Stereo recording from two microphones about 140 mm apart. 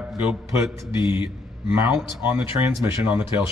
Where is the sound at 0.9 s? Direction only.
35° left (ahead or behind).